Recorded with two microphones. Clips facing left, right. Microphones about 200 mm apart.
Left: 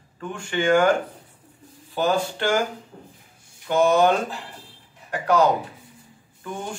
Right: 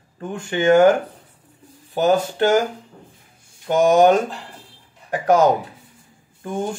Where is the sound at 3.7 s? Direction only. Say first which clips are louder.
Right 4 dB; 45° right (ahead or behind).